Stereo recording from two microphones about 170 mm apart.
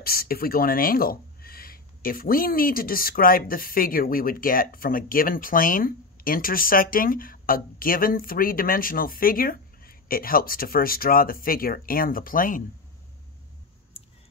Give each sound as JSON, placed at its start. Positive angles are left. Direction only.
{"t": 0.0, "sound": "speech", "side_deg": 60}